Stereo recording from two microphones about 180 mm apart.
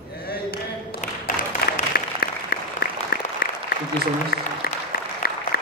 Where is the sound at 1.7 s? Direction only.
55° left (ahead or behind).